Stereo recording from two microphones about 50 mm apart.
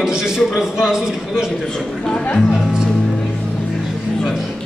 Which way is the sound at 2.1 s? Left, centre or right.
Left.